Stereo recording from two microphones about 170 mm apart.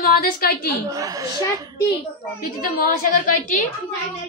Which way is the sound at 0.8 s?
20° right (ahead or behind).